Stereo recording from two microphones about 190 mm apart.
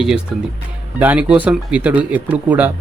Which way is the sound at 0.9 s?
10° right (ahead or behind).